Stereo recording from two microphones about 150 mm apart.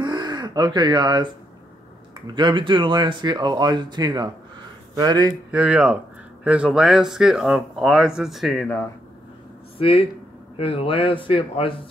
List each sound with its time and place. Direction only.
0.0 s gasp: 30° right (ahead or behind)
2.2 s speech: 30° right (ahead or behind)
5.5 s speech: 10° right (ahead or behind)
9.8 s a man's voice: 40° left (ahead or behind)